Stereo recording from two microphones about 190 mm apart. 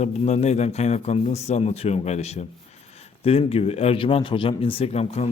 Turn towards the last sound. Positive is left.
turn(degrees=35)  # may be behind; listen again after turning